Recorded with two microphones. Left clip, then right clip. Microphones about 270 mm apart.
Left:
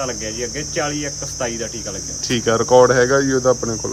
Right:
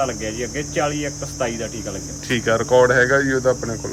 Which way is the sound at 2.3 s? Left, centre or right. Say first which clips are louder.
Left 2 dB; centre.